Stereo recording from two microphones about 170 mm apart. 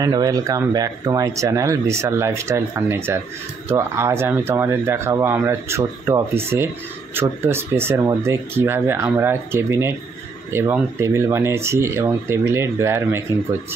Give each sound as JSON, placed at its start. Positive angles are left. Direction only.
{"t": 0.0, "sound": "speech", "side_deg": -20}